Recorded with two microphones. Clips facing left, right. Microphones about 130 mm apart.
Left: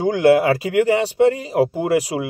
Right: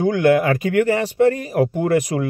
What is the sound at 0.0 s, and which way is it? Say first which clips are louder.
Speech: left 1 dB; 25° left (ahead or behind).